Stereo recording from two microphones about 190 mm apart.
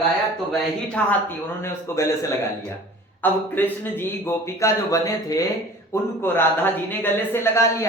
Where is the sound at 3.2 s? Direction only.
10° left (ahead or behind).